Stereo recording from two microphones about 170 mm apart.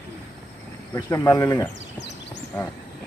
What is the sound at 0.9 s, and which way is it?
Speech, 20° left (ahead or behind).